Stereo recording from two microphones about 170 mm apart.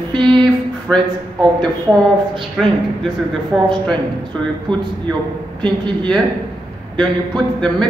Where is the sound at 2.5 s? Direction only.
Centre (ahead or behind).